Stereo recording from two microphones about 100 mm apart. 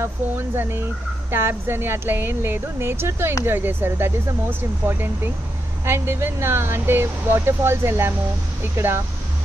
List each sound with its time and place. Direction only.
0.0 s speech: 25° right (ahead or behind)